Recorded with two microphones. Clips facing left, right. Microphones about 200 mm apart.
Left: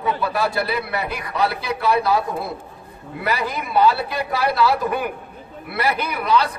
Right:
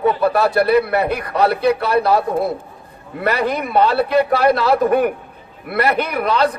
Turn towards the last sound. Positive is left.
turn(degrees=-55)  # may be behind; listen again after turning